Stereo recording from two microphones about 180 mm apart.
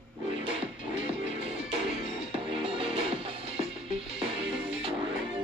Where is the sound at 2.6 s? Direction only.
30° right (ahead or behind).